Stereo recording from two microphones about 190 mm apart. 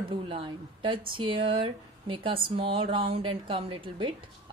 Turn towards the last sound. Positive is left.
turn(degrees=-25)  # may be behind; listen again after turning